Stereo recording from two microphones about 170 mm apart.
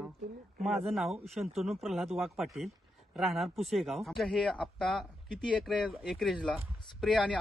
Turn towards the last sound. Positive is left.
turn(degrees=5)  # may be behind; listen again after turning